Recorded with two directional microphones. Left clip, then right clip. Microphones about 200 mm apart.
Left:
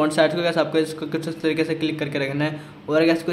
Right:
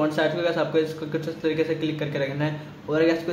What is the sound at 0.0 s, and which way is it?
A man's voice, 30° left (ahead or behind).